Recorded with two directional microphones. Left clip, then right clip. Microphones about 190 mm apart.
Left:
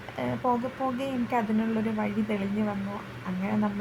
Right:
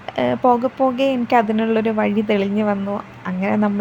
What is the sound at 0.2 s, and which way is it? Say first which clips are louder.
A woman's voice: right 12 dB; 40° right (ahead or behind).